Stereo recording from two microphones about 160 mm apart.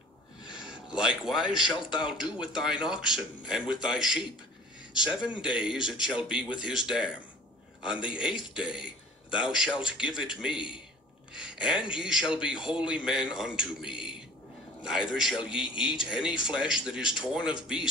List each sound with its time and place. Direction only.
0.8 s a man's voice: 5° right (ahead or behind)